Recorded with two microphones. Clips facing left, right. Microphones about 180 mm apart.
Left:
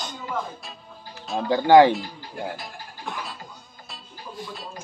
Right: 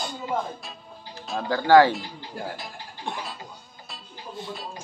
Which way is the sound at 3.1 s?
30° right (ahead or behind).